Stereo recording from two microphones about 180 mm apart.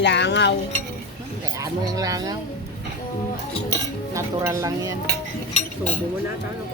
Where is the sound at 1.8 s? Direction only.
20° right (ahead or behind).